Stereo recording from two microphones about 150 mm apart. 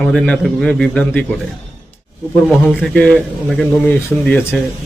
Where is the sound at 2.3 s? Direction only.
Centre (ahead or behind).